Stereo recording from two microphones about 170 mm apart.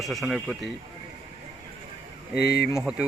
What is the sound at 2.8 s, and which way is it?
Speech, 5° right (ahead or behind).